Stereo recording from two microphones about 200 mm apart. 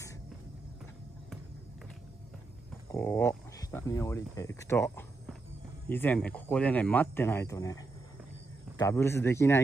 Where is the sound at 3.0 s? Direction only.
10° left (ahead or behind).